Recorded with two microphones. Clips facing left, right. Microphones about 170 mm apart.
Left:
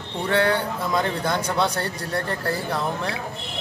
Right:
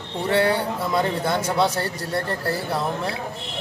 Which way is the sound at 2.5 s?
5° right (ahead or behind).